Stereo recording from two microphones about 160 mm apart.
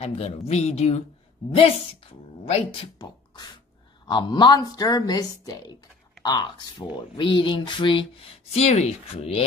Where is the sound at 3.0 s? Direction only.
25° left (ahead or behind).